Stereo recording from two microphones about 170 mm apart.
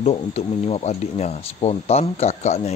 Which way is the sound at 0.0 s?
35° left (ahead or behind).